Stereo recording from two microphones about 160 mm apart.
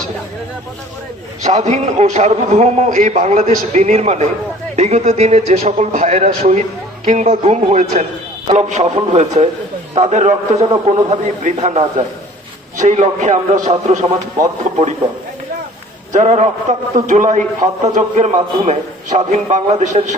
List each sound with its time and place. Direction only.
1.4 s a man's voice: 45° right (ahead or behind)
16.1 s a man's voice: 45° right (ahead or behind)